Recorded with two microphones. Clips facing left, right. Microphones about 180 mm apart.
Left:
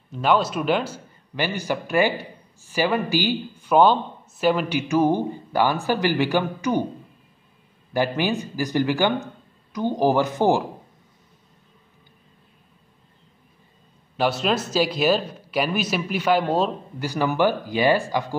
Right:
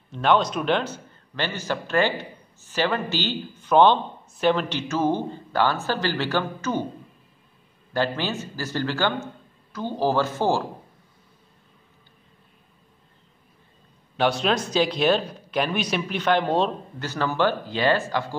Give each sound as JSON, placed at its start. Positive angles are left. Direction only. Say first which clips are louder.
{"t": 0.1, "sound": "speech", "louder": "even", "side_deg": 5}
{"t": 7.9, "sound": "speech", "louder": "left 3 dB", "side_deg": 15}
{"t": 14.1, "sound": "speech", "louder": "even", "side_deg": 5}